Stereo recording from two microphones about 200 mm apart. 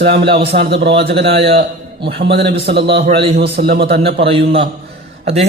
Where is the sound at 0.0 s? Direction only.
55° right (ahead or behind).